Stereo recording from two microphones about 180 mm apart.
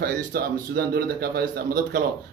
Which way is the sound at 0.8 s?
55° right (ahead or behind).